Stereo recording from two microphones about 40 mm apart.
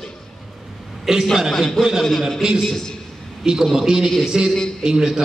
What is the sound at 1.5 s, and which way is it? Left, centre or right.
A man's voice, centre.